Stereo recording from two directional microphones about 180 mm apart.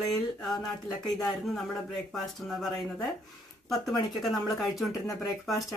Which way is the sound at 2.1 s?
Centre (ahead or behind).